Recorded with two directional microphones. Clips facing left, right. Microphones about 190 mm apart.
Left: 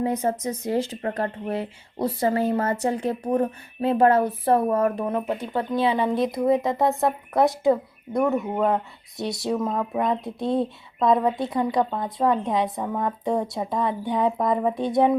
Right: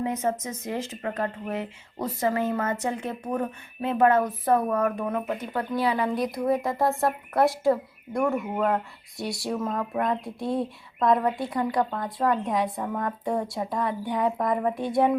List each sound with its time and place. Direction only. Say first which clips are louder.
0.0 s speech: left 3 dB; 35° left (ahead or behind)